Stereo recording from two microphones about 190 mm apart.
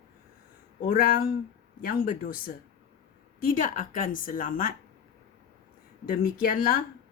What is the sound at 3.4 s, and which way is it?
Speech, 45° left (ahead or behind).